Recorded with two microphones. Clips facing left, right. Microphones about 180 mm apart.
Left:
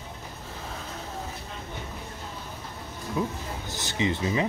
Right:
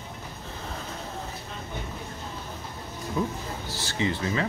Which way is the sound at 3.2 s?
10° left (ahead or behind).